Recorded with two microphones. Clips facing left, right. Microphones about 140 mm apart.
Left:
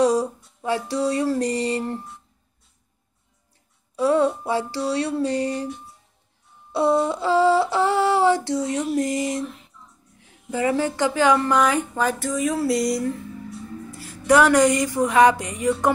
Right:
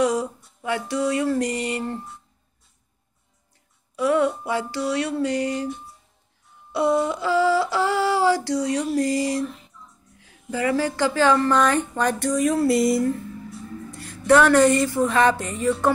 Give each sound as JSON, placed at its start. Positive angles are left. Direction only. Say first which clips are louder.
{"t": 0.0, "sound": "music", "louder": "left 3 dB", "side_deg": 35}
{"t": 3.9, "sound": "speech", "louder": "left 1 dB", "side_deg": 30}
{"t": 6.7, "sound": "a sound", "louder": "left 1 dB", "side_deg": 30}
{"t": 8.5, "sound": "a woman's voice", "louder": "right 1 dB", "side_deg": 25}